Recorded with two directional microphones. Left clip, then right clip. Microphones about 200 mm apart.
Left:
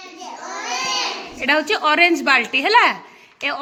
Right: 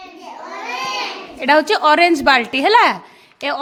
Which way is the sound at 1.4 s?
25° right (ahead or behind).